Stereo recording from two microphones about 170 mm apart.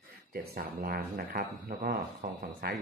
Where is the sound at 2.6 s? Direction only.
65° right (ahead or behind).